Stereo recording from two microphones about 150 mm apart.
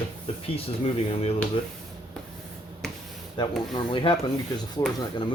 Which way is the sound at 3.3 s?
30° left (ahead or behind).